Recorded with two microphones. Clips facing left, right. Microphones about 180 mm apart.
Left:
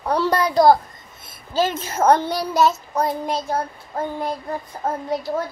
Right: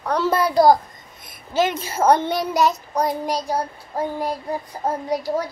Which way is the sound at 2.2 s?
20° right (ahead or behind).